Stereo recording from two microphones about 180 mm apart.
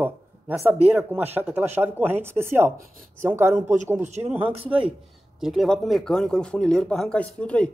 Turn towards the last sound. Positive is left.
turn(degrees=5)  # may be behind; listen again after turning